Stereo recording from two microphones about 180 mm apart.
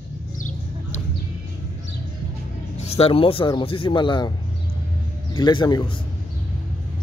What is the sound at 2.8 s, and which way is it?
Speech, 35° left (ahead or behind).